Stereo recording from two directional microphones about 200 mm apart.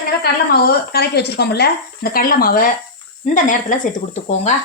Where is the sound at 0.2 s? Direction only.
50° left (ahead or behind); by 4.5 s 35° left (ahead or behind).